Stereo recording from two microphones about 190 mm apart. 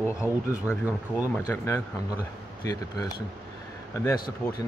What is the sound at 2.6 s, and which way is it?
Speech, 20° left (ahead or behind).